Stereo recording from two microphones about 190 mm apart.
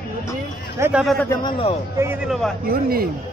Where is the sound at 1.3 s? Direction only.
25° left (ahead or behind).